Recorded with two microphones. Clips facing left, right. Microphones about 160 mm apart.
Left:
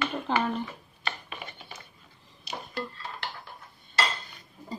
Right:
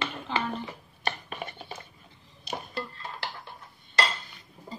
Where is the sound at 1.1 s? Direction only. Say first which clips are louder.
Right 4 dB; 40° right (ahead or behind).